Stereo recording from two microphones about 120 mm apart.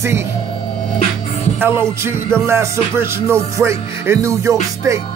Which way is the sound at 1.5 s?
20° right (ahead or behind).